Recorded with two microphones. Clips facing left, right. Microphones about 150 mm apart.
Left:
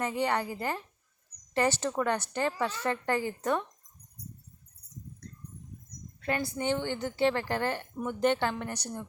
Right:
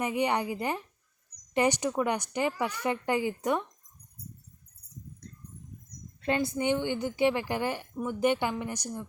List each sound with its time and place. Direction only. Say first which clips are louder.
0.0 s a woman's voice: right 1 dB; 15° right (ahead or behind)
6.2 s a woman's voice: right 3 dB; 20° right (ahead or behind)